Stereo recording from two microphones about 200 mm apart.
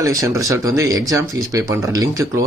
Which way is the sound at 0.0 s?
15° right (ahead or behind).